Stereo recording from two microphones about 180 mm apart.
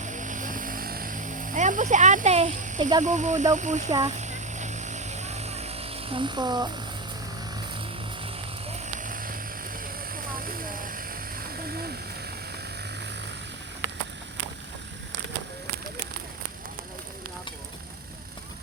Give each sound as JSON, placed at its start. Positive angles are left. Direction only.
{"t": 0.0, "sound": "vehicle", "side_deg": -45}
{"t": 3.0, "sound": "speech", "side_deg": -40}
{"t": 4.0, "sound": "vehicle", "side_deg": -40}
{"t": 8.8, "sound": "vehicle", "side_deg": -45}